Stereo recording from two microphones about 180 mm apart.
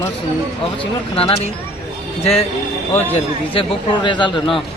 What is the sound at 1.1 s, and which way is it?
Speech, 30° left (ahead or behind).